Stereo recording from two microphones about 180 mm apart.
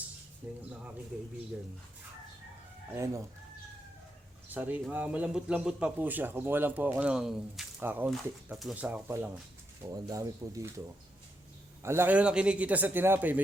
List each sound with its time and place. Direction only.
0.4 s a man's voice: 10° right (ahead or behind)
2.9 s a man's voice: 15° right (ahead or behind)
4.4 s a man's voice: 10° right (ahead or behind)
11.8 s a man's voice: 15° right (ahead or behind)